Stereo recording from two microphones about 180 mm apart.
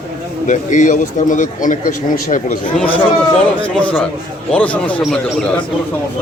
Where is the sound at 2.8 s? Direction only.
10° left (ahead or behind).